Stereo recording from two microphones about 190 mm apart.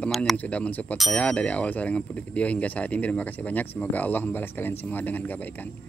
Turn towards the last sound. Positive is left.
turn(degrees=10)  # may be behind; listen again after turning